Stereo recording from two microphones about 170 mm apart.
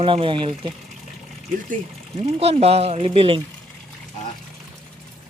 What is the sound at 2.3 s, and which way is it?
Speech, 35° right (ahead or behind).